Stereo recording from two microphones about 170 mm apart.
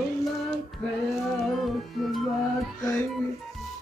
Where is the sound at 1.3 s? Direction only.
Centre (ahead or behind).